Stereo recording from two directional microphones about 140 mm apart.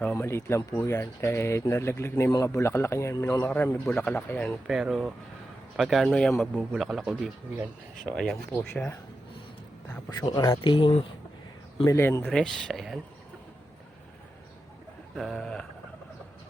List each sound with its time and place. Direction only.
0.0 s speech: 15° left (ahead or behind)
4.6 s speech: 5° right (ahead or behind)
8.7 s speech: 15° left (ahead or behind)
10.1 s speech: 30° left (ahead or behind)
11.9 s speech: 20° left (ahead or behind)
12.3 s speech: 5° left (ahead or behind)
15.1 s speech: centre (ahead or behind)